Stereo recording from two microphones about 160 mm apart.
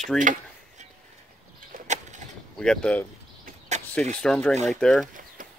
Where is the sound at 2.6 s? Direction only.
5° left (ahead or behind).